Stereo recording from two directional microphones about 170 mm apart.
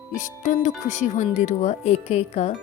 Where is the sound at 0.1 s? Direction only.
50° left (ahead or behind).